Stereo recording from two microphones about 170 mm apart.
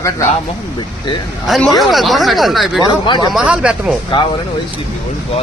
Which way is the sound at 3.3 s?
5° right (ahead or behind).